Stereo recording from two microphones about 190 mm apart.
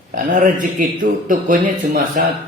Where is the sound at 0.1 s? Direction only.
45° right (ahead or behind).